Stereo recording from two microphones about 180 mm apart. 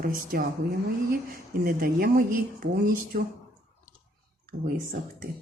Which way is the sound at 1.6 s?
55° right (ahead or behind).